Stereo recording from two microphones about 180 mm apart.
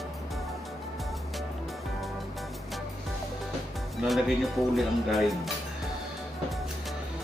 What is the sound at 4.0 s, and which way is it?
Speech, centre (ahead or behind).